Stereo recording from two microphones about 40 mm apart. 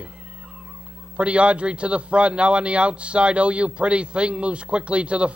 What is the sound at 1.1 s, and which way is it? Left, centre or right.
A man's voice, right.